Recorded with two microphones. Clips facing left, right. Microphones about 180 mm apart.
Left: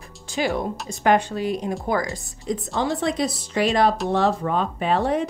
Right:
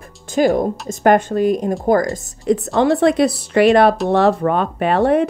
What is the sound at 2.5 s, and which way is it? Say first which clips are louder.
Speech: right 9 dB; 65° right (ahead or behind).